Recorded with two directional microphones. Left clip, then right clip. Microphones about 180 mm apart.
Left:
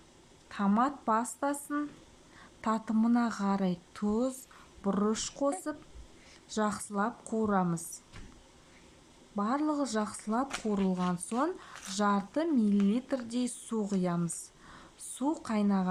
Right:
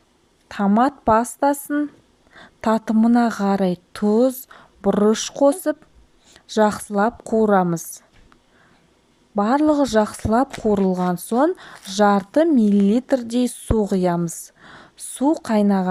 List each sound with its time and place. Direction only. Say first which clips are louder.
0.4 s a woman's voice: right 11 dB; 45° right (ahead or behind)
9.3 s a woman's voice: right 14 dB; 50° right (ahead or behind)